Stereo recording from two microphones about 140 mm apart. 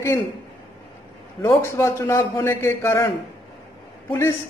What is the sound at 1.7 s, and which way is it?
Speech, 20° left (ahead or behind).